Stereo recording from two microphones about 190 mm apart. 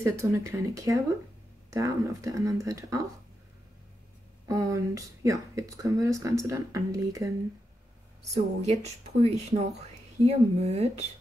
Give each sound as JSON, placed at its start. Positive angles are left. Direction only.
{"t": 0.0, "sound": "speech", "side_deg": -15}
{"t": 4.5, "sound": "speech", "side_deg": -15}
{"t": 8.2, "sound": "a woman's voice", "side_deg": -35}